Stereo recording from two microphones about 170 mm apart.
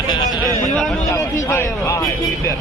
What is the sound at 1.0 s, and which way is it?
Vehicle, 15° left (ahead or behind).